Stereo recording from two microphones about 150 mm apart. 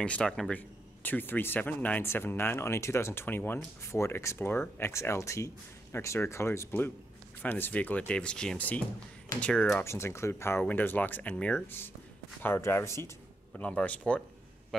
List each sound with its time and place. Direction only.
0.0 s a man's voice: 5° left (ahead or behind)